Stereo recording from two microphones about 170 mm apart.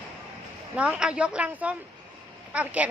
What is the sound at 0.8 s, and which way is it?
Speech, 5° right (ahead or behind).